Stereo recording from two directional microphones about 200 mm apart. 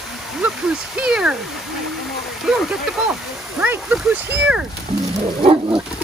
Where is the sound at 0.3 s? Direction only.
5° right (ahead or behind).